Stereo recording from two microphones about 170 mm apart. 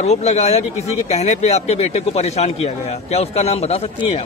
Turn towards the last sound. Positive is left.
turn(degrees=35)  # may be behind; listen again after turning